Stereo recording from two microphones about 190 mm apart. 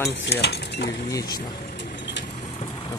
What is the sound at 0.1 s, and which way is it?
Cutlery, 65° left (ahead or behind).